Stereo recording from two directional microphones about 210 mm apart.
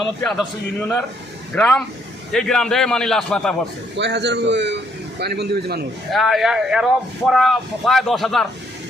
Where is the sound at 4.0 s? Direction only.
55° right (ahead or behind).